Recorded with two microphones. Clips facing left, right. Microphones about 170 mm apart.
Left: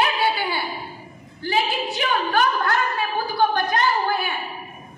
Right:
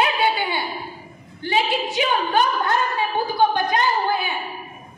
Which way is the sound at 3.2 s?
20° right (ahead or behind).